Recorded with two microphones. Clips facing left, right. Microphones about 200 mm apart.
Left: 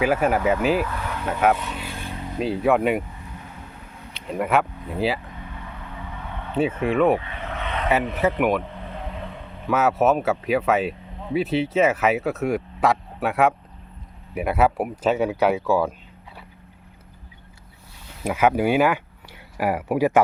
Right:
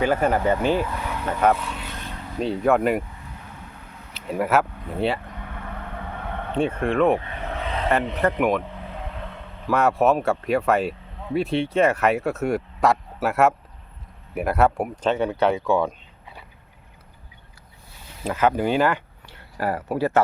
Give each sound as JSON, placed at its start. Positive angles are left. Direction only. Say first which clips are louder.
{"t": 0.0, "sound": "speech", "louder": "even", "side_deg": 5}
{"t": 0.9, "sound": "speech", "louder": "even", "side_deg": -5}
{"t": 4.1, "sound": "speech", "louder": "right 1 dB", "side_deg": -5}
{"t": 5.5, "sound": "vehicle", "louder": "right 5 dB", "side_deg": -60}
{"t": 6.6, "sound": "speech", "louder": "left 1 dB", "side_deg": 5}
{"t": 7.6, "sound": "vehicle", "louder": "even", "side_deg": -35}
{"t": 8.4, "sound": "speech", "louder": "even", "side_deg": 0}
{"t": 18.2, "sound": "speech", "louder": "left 1 dB", "side_deg": 10}